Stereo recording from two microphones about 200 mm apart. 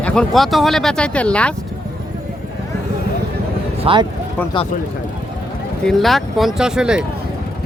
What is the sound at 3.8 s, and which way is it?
Speech, 25° right (ahead or behind).